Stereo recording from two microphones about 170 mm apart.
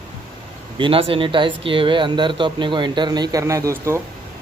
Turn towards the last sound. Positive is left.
turn(degrees=-15)  # may be behind; listen again after turning